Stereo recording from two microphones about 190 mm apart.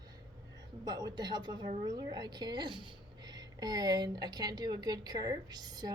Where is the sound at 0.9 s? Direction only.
20° right (ahead or behind).